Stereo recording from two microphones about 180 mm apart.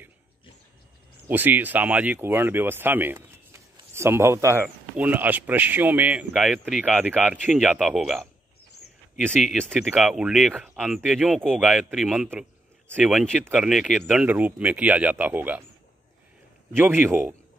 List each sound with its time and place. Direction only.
1.2 s speech: 10° right (ahead or behind)
16.7 s speech: 10° right (ahead or behind)